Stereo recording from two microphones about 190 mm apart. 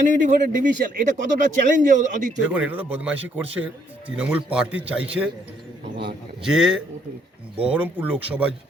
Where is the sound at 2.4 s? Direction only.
5° right (ahead or behind).